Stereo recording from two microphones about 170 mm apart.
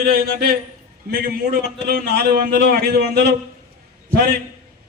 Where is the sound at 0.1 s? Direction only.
65° right (ahead or behind).